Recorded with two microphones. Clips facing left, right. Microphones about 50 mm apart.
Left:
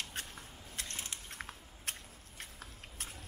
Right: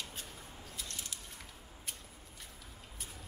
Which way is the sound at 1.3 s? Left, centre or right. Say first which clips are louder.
Left 5 dB; left.